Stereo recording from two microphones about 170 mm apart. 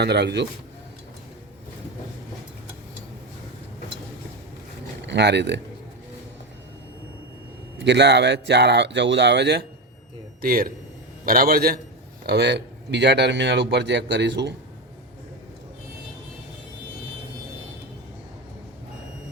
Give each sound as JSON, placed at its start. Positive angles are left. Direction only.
{"t": 0.0, "sound": "a man's voice", "side_deg": -80}
{"t": 5.0, "sound": "speech", "side_deg": -85}
{"t": 7.8, "sound": "a man's voice", "side_deg": -90}
{"t": 10.4, "sound": "a man's voice", "side_deg": -55}
{"t": 12.2, "sound": "a man's voice", "side_deg": -75}